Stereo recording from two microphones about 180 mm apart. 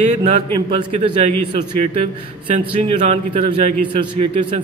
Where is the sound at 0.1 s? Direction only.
40° right (ahead or behind).